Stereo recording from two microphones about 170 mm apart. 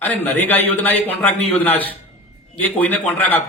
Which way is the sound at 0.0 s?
10° left (ahead or behind).